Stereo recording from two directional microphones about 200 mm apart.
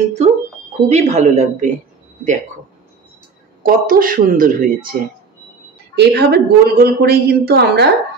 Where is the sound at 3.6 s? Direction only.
45° right (ahead or behind).